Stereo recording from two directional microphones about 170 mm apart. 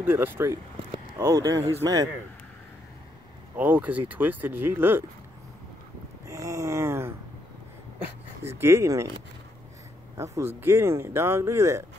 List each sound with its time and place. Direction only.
0.0 s speech: 10° right (ahead or behind)
3.5 s speech: 10° right (ahead or behind)
6.2 s speech: 20° right (ahead or behind)
8.5 s speech: 15° right (ahead or behind)
10.1 s speech: 15° right (ahead or behind)